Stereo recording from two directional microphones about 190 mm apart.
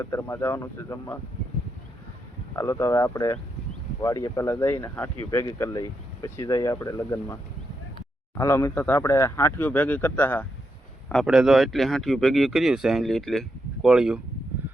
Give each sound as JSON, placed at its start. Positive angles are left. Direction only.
{"t": 0.0, "sound": "speech", "side_deg": 15}
{"t": 2.6, "sound": "speech", "side_deg": 15}
{"t": 8.4, "sound": "speech", "side_deg": 15}